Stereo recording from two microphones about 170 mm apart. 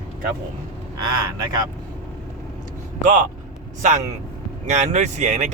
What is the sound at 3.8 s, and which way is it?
Speech, 45° right (ahead or behind).